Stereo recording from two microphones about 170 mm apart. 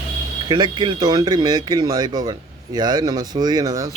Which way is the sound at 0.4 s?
25° right (ahead or behind).